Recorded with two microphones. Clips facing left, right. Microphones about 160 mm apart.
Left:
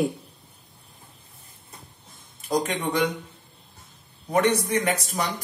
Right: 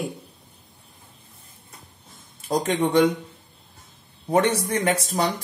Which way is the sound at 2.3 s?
30° right (ahead or behind).